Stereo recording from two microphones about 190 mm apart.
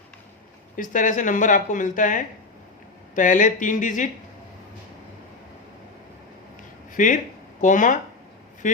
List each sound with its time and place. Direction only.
0.8 s speech: 45° left (ahead or behind)
6.9 s speech: 45° left (ahead or behind)